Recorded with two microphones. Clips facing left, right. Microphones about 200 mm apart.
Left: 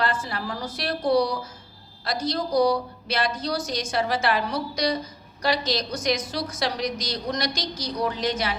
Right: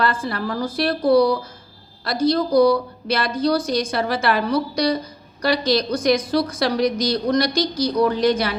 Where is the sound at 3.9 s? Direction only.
55° right (ahead or behind).